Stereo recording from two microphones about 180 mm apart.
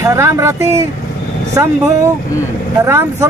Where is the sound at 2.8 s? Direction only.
15° right (ahead or behind).